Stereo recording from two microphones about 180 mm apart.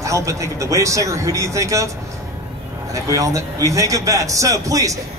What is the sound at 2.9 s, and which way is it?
A man's voice, 20° right (ahead or behind).